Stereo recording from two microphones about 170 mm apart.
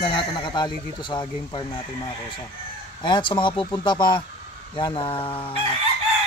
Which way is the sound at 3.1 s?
30° left (ahead or behind).